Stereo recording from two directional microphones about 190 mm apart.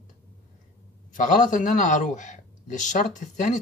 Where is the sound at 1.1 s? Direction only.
45° left (ahead or behind).